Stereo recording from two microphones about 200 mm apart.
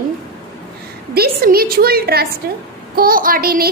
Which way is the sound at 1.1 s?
50° right (ahead or behind).